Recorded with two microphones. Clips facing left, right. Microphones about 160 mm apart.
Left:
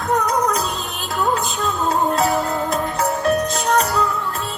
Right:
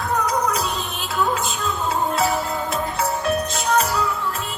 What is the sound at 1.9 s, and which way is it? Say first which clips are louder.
Music: left 3 dB; 40° left (ahead or behind).